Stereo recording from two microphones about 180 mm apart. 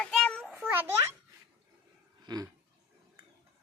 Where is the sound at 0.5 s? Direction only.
10° right (ahead or behind).